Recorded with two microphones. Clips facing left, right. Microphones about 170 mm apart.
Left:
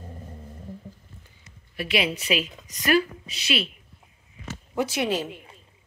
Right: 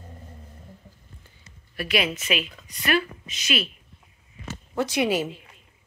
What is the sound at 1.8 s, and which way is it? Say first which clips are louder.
Speech: even; 25° left (ahead or behind).